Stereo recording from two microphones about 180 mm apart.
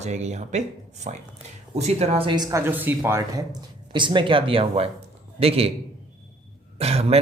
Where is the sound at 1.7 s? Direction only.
35° right (ahead or behind).